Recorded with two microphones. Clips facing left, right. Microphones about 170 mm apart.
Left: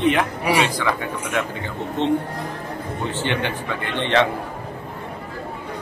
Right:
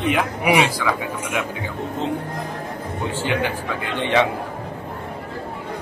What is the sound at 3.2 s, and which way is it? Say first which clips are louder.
A man's voice: right 2 dB; 5° right (ahead or behind).